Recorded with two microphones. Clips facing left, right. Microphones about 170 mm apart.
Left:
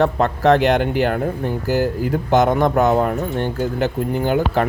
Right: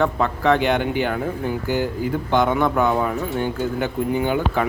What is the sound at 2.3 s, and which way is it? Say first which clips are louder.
Speech: left 4 dB; 40° left (ahead or behind).